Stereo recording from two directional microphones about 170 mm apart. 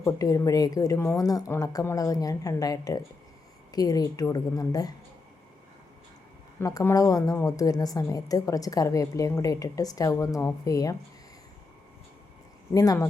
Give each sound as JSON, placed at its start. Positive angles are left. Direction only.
{"t": 0.0, "sound": "a woman's voice", "side_deg": 20}
{"t": 6.6, "sound": "a woman's voice", "side_deg": 20}
{"t": 12.7, "sound": "a woman's voice", "side_deg": 20}